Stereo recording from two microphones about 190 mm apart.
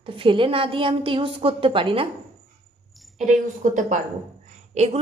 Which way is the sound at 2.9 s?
Centre (ahead or behind).